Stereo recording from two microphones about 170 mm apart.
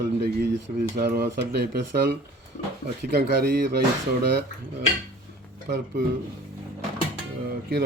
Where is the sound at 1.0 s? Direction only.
70° right (ahead or behind).